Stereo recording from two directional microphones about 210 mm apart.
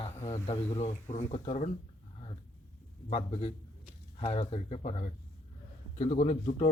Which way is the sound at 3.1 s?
25° left (ahead or behind).